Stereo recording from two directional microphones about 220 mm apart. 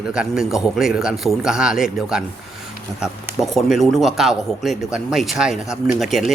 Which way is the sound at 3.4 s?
Centre (ahead or behind).